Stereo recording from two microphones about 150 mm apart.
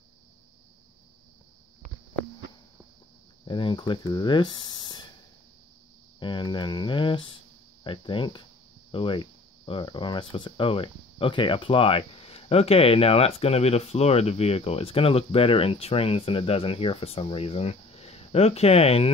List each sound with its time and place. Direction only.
3.4 s speech: 35° left (ahead or behind)
6.1 s speech: 30° left (ahead or behind)